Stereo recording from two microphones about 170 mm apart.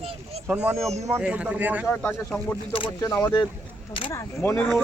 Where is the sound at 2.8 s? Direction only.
25° left (ahead or behind).